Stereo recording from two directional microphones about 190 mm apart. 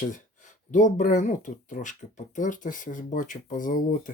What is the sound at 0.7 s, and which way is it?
Speech, 40° left (ahead or behind).